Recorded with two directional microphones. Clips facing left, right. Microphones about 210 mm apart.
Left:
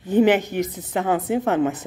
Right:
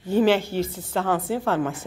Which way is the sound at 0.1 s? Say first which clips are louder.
Left 2 dB; 20° left (ahead or behind).